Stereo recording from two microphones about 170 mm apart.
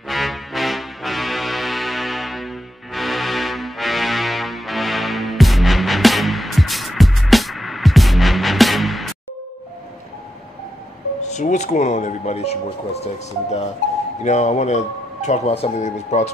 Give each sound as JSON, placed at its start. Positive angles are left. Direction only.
{"t": 0.1, "sound": "music", "side_deg": 0}
{"t": 11.2, "sound": "speech", "side_deg": 45}